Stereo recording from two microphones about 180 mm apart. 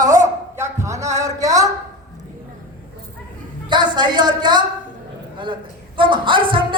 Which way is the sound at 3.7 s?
25° right (ahead or behind).